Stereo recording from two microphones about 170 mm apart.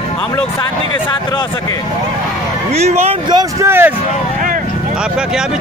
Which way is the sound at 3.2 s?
25° right (ahead or behind).